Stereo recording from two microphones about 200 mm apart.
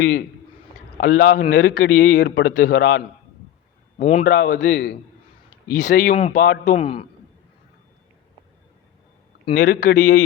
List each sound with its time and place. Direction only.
0.9 s a man's voice: 45° left (ahead or behind); by 3.0 s 65° left (ahead or behind)
3.9 s a man's voice: 35° left (ahead or behind)
6.7 s a man's voice: 30° left (ahead or behind)
9.6 s speech: 40° left (ahead or behind)